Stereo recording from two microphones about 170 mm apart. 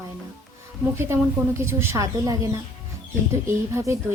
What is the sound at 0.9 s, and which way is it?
A woman's voice, 15° right (ahead or behind).